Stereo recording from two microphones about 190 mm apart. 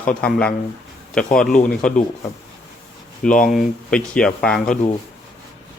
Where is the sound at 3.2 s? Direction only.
5° left (ahead or behind).